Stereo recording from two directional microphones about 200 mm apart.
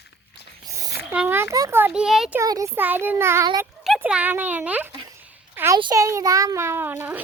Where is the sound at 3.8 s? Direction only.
5° right (ahead or behind).